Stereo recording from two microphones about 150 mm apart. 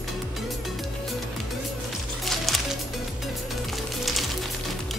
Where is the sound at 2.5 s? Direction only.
Centre (ahead or behind).